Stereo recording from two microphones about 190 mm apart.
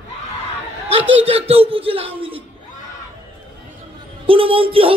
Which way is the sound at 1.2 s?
30° right (ahead or behind).